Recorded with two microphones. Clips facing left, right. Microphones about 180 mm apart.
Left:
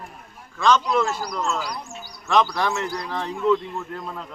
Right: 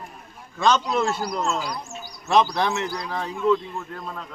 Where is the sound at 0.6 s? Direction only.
25° right (ahead or behind).